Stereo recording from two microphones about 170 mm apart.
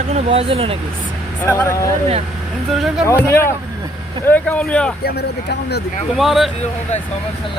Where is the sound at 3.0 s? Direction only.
15° left (ahead or behind).